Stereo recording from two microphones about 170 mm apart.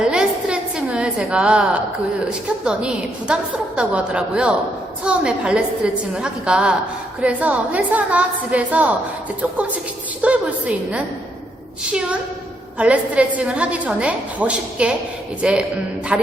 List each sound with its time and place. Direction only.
0.0 s a sound: 5° right (ahead or behind)
2.6 s a woman's voice: 5° right (ahead or behind)
10.2 s a woman's voice: 5° right (ahead or behind)
12.8 s a woman's voice: 5° right (ahead or behind)